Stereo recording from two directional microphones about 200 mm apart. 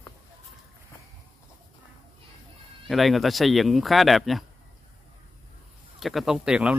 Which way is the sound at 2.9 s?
Centre (ahead or behind).